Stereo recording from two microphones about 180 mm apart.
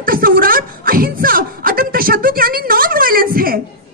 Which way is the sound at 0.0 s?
55° right (ahead or behind).